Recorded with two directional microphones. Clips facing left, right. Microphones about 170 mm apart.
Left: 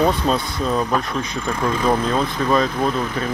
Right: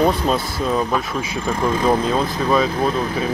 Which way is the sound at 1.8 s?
5° right (ahead or behind).